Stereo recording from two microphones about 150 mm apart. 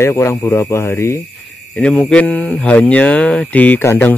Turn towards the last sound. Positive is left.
turn(degrees=15)  # may be behind; listen again after turning